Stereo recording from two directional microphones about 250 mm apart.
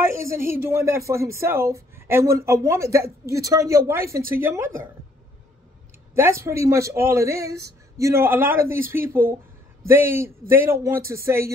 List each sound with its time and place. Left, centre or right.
0.1 s speech: centre
6.1 s speech: centre